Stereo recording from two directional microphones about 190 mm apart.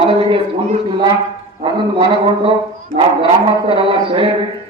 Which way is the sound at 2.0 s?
25° right (ahead or behind).